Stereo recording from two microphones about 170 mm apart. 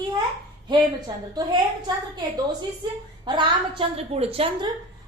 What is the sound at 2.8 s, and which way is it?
Speech, 25° right (ahead or behind).